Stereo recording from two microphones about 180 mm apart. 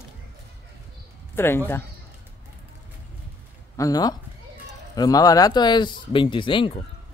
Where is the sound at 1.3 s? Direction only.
15° left (ahead or behind).